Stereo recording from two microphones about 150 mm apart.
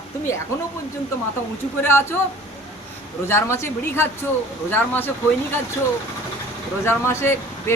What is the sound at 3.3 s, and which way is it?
Speech, 15° left (ahead or behind).